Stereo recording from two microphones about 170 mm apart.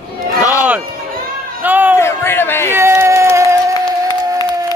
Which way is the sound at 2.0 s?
15° left (ahead or behind).